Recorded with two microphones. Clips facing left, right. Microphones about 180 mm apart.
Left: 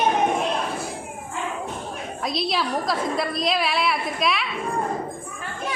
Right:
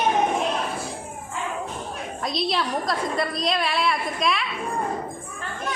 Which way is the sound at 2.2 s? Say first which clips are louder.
Even; centre (ahead or behind).